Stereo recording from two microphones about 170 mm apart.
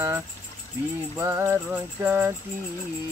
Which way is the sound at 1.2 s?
15° right (ahead or behind).